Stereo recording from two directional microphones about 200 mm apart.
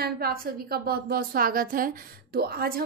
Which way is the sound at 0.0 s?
50° right (ahead or behind).